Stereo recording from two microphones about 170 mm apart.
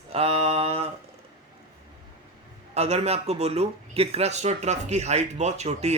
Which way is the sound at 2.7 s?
40° right (ahead or behind).